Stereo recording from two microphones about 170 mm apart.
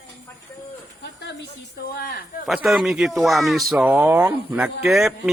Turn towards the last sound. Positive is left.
turn(degrees=0)  # may be behind; listen again after turning